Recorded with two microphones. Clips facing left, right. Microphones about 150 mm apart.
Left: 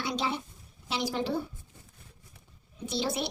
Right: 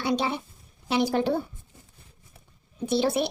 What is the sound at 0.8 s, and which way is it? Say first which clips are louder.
Speech: right 7 dB; 55° right (ahead or behind).